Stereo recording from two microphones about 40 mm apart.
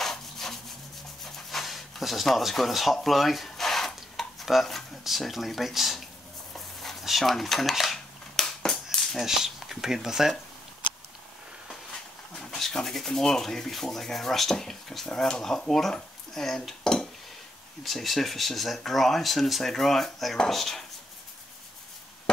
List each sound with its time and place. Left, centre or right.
0.0 s wood: centre
1.2 s pant: centre
2.5 s a sound: centre
4.5 s speech: centre
6.5 s dishes: centre
9.2 s speech: centre
12.4 s rub: centre
15.0 s speech: centre
17.8 s speech: centre
20.4 s rub: centre